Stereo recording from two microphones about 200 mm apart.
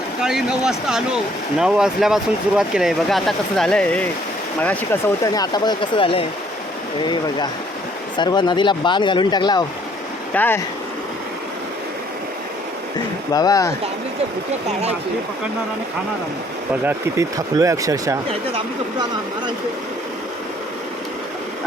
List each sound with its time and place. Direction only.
0.2 s speech: 5° right (ahead or behind); by 9.6 s 20° left (ahead or behind)
10.3 s speech: 10° left (ahead or behind)
13.3 s speech: 20° left (ahead or behind)
16.8 s speech: 15° right (ahead or behind)